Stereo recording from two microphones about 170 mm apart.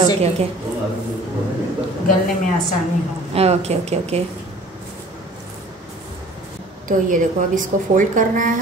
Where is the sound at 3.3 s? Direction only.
35° right (ahead or behind).